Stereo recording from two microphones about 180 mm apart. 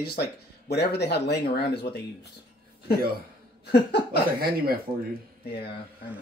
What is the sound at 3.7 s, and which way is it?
Speech, 65° left (ahead or behind).